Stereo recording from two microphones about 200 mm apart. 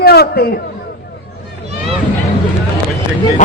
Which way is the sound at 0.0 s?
50° left (ahead or behind).